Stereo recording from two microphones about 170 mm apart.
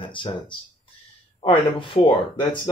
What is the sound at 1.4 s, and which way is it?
Speech, 30° left (ahead or behind).